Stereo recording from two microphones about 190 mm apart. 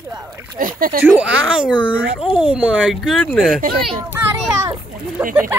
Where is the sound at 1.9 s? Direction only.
5° right (ahead or behind).